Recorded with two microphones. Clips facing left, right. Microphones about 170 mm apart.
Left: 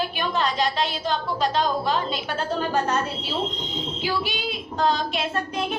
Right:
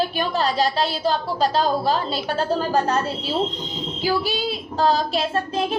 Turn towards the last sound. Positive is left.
turn(degrees=-30)  # may be behind; listen again after turning